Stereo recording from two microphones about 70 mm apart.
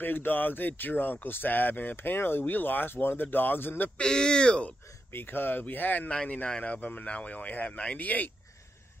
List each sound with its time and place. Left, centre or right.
0.0 s speech: left
4.0 s speech: centre
5.1 s speech: left